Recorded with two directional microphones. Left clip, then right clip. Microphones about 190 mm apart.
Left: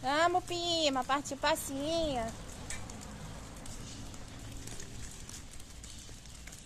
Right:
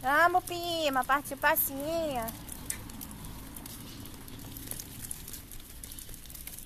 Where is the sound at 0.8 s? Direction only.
Centre (ahead or behind).